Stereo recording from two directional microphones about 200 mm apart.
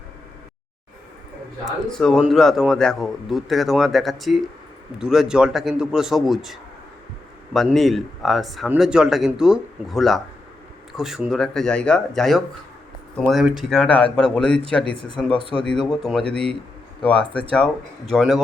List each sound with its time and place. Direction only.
1.6 s speech: centre (ahead or behind)
15.4 s speech: 30° right (ahead or behind)
15.9 s speech: centre (ahead or behind)
16.2 s speech: 30° right (ahead or behind)
17.1 s speech: 5° left (ahead or behind)